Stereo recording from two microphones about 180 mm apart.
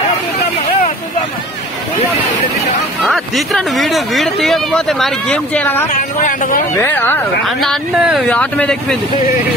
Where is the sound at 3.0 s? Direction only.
Centre (ahead or behind).